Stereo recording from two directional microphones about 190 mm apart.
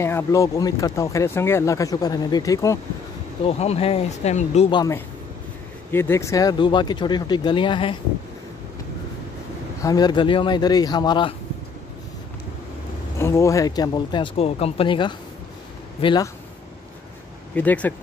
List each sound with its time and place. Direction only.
0.0 s speech: 15° left (ahead or behind)
3.4 s speech: 35° left (ahead or behind)
4.6 s speech: 25° left (ahead or behind)
5.9 s speech: 10° left (ahead or behind)
9.8 s speech: 20° left (ahead or behind)
13.2 s speech: 15° left (ahead or behind)
17.6 s speech: 10° left (ahead or behind)